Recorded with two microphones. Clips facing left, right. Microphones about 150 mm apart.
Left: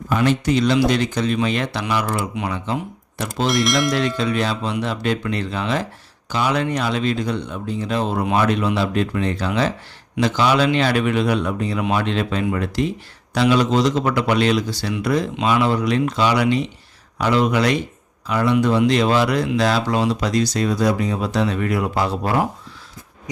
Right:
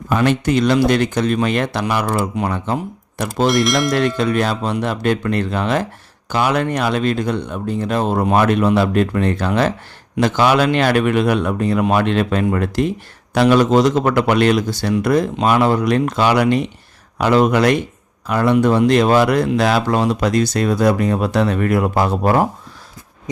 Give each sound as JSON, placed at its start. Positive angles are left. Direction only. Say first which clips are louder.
{"t": 0.1, "sound": "a man's voice", "louder": "right 2 dB", "side_deg": -55}
{"t": 3.5, "sound": "speech", "louder": "left 1 dB", "side_deg": 0}
{"t": 4.2, "sound": "a man's voice", "louder": "right 3 dB", "side_deg": -55}